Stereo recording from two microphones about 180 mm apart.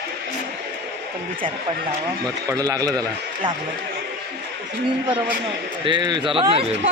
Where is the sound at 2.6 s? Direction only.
20° right (ahead or behind).